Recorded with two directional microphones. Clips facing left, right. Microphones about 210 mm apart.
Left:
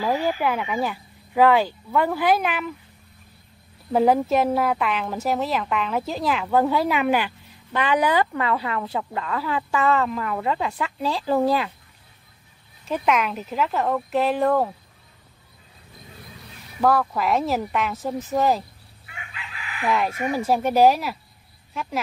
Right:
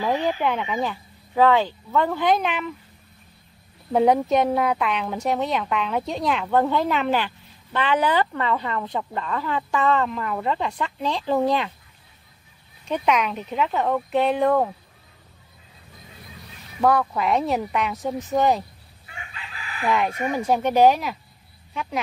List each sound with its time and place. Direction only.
0.0 s speech: 10° left (ahead or behind)
3.9 s a woman's voice: centre (ahead or behind)
12.8 s a woman's voice: centre (ahead or behind)
16.8 s a woman's voice: centre (ahead or behind)
19.3 s chicken: 35° right (ahead or behind)
19.9 s a woman's voice: 5° left (ahead or behind)